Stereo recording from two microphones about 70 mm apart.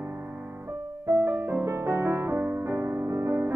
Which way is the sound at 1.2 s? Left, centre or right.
Right.